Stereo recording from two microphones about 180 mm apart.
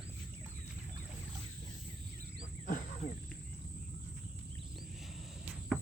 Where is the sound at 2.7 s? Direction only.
45° left (ahead or behind).